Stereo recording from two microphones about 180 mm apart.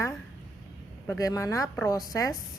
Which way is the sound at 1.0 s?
15° left (ahead or behind).